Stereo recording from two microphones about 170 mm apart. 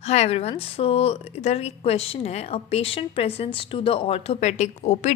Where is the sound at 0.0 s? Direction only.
40° left (ahead or behind).